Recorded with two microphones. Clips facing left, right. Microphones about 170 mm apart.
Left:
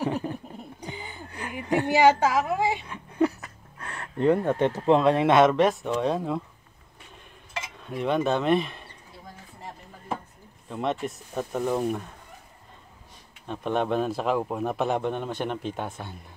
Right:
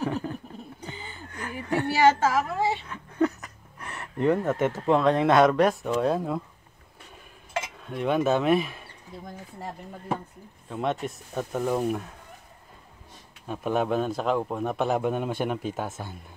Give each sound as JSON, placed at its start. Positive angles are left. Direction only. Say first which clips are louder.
{"t": 0.0, "sound": "a sound", "louder": "left 1 dB", "side_deg": 15}
{"t": 4.2, "sound": "speech", "louder": "left 2 dB", "side_deg": 15}
{"t": 5.1, "sound": "a man's voice", "louder": "even", "side_deg": 5}
{"t": 7.8, "sound": "a man's voice", "louder": "even", "side_deg": 0}
{"t": 10.7, "sound": "a man's voice", "louder": "even", "side_deg": 0}
{"t": 13.5, "sound": "a man's voice", "louder": "even", "side_deg": -5}